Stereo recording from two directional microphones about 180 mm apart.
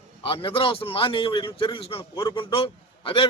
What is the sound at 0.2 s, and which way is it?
A man's voice, 30° left (ahead or behind).